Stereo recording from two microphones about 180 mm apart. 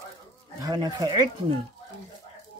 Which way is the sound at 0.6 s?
20° right (ahead or behind).